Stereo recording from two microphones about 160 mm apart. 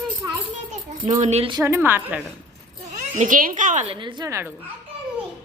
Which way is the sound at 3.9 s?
30° right (ahead or behind).